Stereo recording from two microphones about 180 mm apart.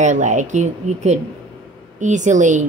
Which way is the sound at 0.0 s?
40° right (ahead or behind).